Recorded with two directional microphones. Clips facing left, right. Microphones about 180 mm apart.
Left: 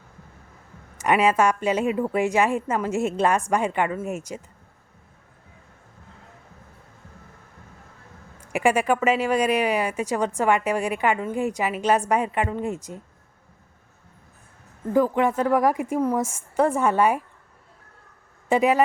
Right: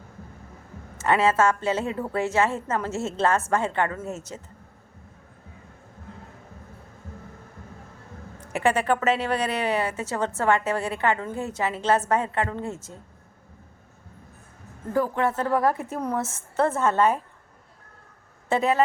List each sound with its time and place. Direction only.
0.9 s speech: 15° left (ahead or behind)
8.4 s speech: 10° left (ahead or behind)
14.9 s speech: 15° left (ahead or behind)
18.4 s speech: 15° left (ahead or behind)